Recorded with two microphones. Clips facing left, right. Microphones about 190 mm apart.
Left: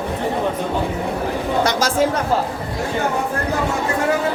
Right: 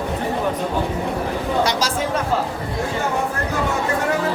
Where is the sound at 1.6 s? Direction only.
50° left (ahead or behind).